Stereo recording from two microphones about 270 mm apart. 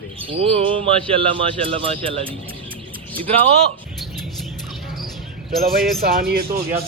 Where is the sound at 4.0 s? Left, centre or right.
Centre.